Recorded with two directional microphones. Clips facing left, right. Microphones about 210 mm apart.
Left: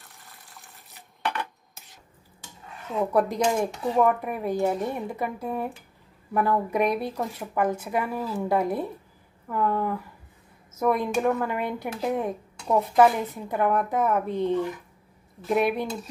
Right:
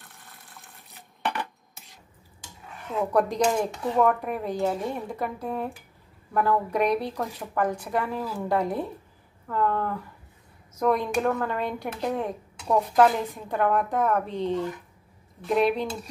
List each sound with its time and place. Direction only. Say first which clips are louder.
0.0 s water: right 1 dB; centre (ahead or behind)
2.9 s speech: even; 5° left (ahead or behind)